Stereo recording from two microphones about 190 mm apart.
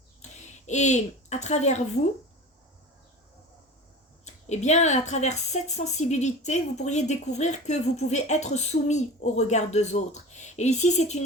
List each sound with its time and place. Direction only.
0.7 s a woman's voice: 40° left (ahead or behind)
4.4 s a woman's voice: 35° left (ahead or behind)